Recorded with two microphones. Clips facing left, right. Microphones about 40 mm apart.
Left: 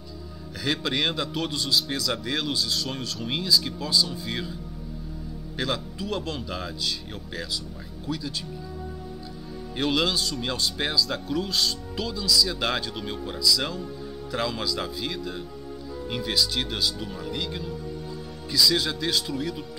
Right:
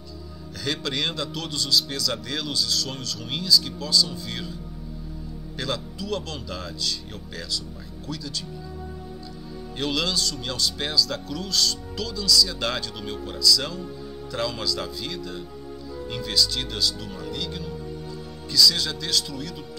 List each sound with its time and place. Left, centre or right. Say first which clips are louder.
0.7 s a man's voice: left 2 dB; centre
5.9 s speech: even; left
9.8 s a man's voice: left 2 dB; centre